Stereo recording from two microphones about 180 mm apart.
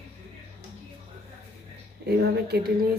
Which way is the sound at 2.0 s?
65° right (ahead or behind).